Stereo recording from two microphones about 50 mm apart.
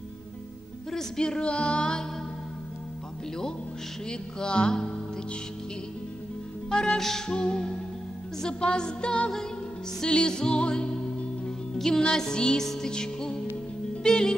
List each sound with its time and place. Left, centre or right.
0.9 s music: centre
4.1 s music: centre
6.7 s music: centre